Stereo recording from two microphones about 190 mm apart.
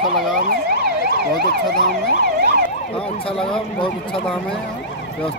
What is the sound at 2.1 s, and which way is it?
Emergency vehicle, 55° right (ahead or behind).